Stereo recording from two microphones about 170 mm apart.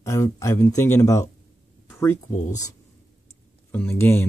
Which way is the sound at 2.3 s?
45° left (ahead or behind).